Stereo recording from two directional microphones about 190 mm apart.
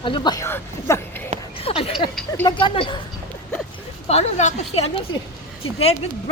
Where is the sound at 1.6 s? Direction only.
30° left (ahead or behind).